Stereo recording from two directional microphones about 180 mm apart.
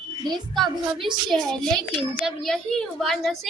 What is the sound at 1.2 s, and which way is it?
A woman's voice, centre (ahead or behind).